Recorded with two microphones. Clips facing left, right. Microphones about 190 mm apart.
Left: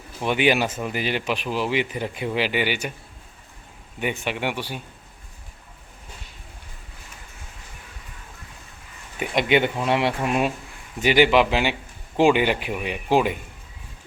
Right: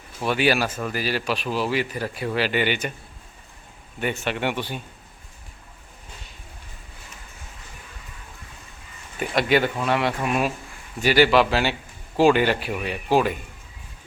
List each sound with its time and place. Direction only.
0.3 s speech: 20° left (ahead or behind)
4.0 s speech: 15° left (ahead or behind)
9.3 s speech: 20° left (ahead or behind)